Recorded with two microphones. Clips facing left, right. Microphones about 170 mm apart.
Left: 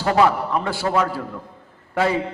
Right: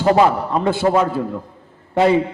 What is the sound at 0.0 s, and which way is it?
A man's voice, 25° right (ahead or behind).